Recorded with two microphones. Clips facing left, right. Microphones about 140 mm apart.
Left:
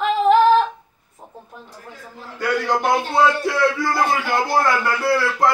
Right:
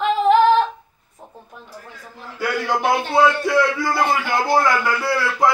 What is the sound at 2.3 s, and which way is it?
A man's voice, 5° right (ahead or behind).